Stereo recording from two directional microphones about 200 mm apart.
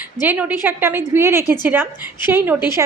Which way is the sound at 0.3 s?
10° right (ahead or behind).